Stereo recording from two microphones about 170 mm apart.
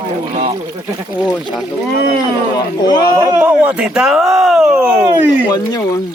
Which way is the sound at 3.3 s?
10° right (ahead or behind).